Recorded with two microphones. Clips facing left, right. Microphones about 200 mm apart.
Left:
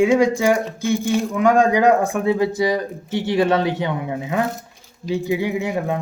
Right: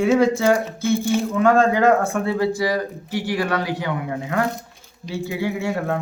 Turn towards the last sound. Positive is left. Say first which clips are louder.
# left 1 dB
turn(degrees=15)  # may be behind; listen again after turning